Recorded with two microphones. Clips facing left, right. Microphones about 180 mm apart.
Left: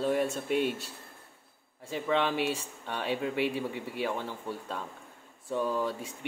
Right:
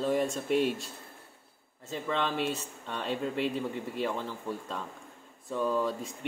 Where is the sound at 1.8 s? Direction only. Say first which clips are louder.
Left 3 dB; 10° left (ahead or behind).